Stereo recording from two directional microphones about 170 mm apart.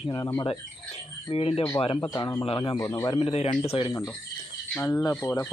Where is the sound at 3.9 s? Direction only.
20° left (ahead or behind).